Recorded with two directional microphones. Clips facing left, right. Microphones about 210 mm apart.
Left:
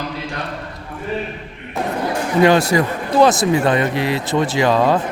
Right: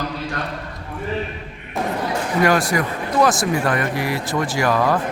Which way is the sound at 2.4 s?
25° left (ahead or behind).